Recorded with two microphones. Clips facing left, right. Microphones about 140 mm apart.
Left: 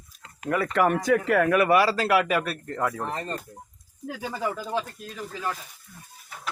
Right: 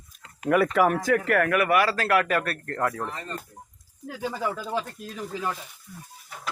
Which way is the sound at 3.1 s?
40° left (ahead or behind).